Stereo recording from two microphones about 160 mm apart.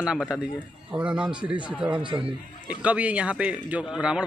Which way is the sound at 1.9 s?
30° right (ahead or behind).